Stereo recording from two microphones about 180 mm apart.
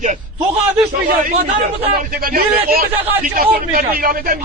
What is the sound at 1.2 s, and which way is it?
Speech, 40° right (ahead or behind).